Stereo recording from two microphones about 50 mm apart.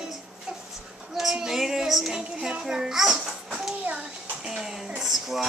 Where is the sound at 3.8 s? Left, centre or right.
Right; by 4.8 s centre.